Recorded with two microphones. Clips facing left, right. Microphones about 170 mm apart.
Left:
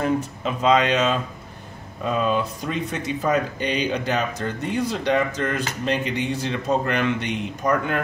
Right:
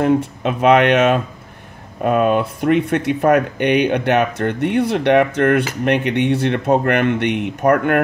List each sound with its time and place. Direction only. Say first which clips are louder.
0.0 s speech: right 7 dB; 65° right (ahead or behind)